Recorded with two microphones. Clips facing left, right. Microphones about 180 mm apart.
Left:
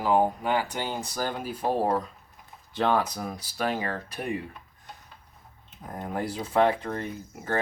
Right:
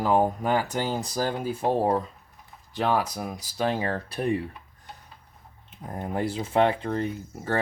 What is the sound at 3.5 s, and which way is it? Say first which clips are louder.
Speech: right 3 dB; 25° right (ahead or behind).